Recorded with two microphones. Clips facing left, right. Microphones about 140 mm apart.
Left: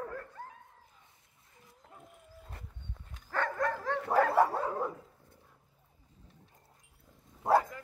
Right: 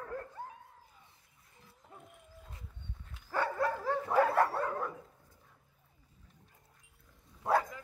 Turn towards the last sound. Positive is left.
turn(degrees=25)  # may be behind; listen again after turning